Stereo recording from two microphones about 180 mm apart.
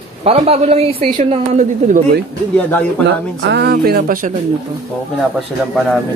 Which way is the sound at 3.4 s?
70° right (ahead or behind).